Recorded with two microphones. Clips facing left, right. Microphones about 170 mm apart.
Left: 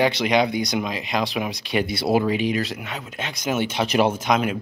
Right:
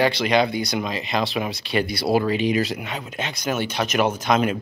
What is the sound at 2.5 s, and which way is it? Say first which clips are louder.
Speech: right 2 dB; centre (ahead or behind).